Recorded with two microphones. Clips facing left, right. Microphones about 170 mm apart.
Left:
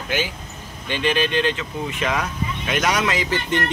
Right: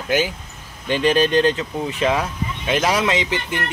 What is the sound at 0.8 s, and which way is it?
Speech, 40° right (ahead or behind).